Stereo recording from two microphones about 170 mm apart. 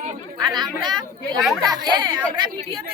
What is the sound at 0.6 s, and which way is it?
Speech, 25° right (ahead or behind).